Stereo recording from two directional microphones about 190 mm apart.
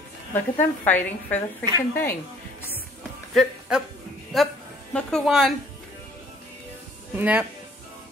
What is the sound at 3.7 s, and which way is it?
A woman's voice, 5° right (ahead or behind).